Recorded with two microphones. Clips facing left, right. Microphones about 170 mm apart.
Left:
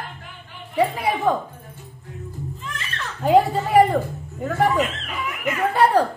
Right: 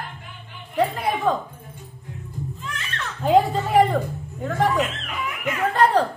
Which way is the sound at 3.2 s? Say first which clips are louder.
Left 1 dB; 5° left (ahead or behind).